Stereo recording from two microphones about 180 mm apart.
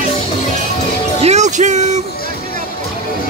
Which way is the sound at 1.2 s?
40° right (ahead or behind).